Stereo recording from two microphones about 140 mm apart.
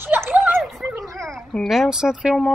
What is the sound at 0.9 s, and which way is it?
Fowl, centre (ahead or behind).